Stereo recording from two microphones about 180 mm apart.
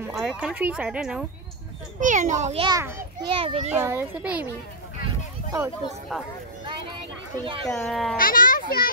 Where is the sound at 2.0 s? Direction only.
45° right (ahead or behind).